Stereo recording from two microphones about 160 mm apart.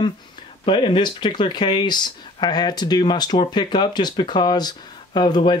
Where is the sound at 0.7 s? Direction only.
30° left (ahead or behind).